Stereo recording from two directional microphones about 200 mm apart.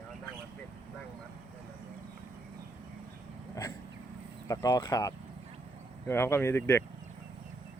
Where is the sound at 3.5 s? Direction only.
15° left (ahead or behind).